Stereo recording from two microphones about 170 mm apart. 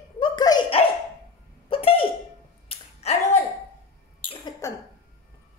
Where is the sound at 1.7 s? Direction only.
35° left (ahead or behind).